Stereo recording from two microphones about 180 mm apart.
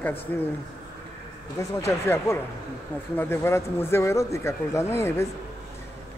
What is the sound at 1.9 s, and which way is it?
A man's voice, 15° left (ahead or behind).